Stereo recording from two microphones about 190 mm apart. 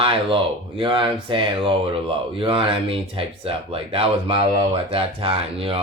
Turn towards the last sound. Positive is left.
turn(degrees=-30)  # may be behind; listen again after turning